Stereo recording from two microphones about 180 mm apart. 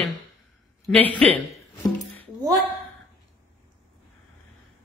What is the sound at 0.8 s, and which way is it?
Speech, 10° left (ahead or behind).